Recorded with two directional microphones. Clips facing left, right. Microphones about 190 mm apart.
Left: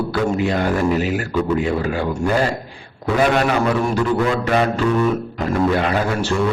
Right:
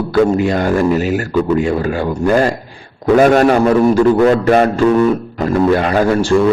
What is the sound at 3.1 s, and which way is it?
A man's voice, 45° right (ahead or behind).